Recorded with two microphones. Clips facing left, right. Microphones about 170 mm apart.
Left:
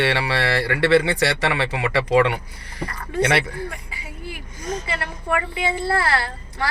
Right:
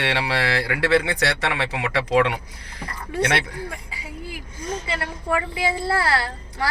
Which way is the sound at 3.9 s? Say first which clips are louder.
Even; 25° left (ahead or behind).